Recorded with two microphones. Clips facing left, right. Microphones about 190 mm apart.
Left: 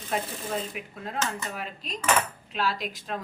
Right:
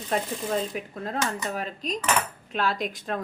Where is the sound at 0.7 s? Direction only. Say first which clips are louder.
Right 5 dB; 40° right (ahead or behind).